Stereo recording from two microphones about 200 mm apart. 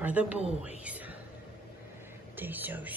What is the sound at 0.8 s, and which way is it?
Whispering, 10° right (ahead or behind).